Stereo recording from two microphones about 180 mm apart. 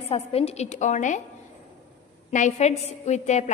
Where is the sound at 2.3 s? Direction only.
45° left (ahead or behind).